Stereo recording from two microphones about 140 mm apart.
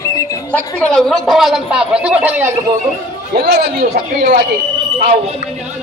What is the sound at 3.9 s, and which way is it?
Speech, 80° right.